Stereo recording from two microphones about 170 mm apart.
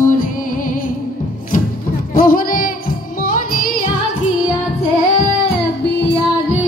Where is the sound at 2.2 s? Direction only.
55° left (ahead or behind).